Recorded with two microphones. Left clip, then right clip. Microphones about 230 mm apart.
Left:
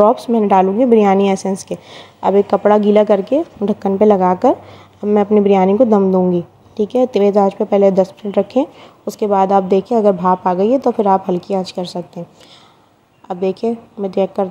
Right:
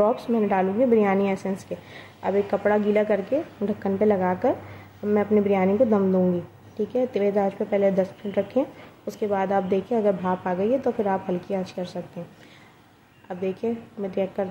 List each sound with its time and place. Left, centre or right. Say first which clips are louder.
0.0 s a woman's voice: left 10 dB; left
13.3 s a woman's voice: left 10 dB; left